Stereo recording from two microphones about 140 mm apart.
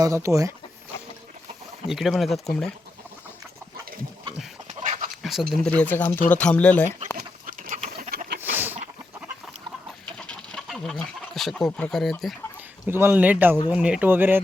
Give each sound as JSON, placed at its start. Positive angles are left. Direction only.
{"t": 0.0, "sound": "speech", "side_deg": -20}
{"t": 1.9, "sound": "speech", "side_deg": 0}
{"t": 4.7, "sound": "dog", "side_deg": -60}
{"t": 5.2, "sound": "speech", "side_deg": 0}
{"t": 5.6, "sound": "speech", "side_deg": 10}
{"t": 7.4, "sound": "bird", "side_deg": -75}
{"t": 7.8, "sound": "bird", "side_deg": -50}
{"t": 8.4, "sound": "a sound", "side_deg": -15}
{"t": 10.2, "sound": "chicken", "side_deg": 5}
{"t": 12.9, "sound": "speech", "side_deg": -15}